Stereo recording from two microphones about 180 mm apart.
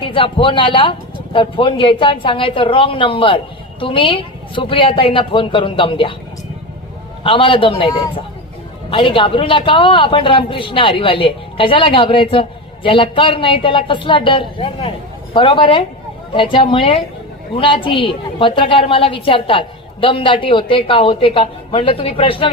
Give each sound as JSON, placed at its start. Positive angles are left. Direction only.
{"t": 0.0, "sound": "a man's voice", "side_deg": 30}
{"t": 7.3, "sound": "a man's voice", "side_deg": 30}